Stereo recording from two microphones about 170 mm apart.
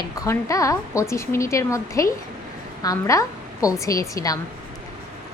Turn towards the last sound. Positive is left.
turn(degrees=20)  # may be behind; listen again after turning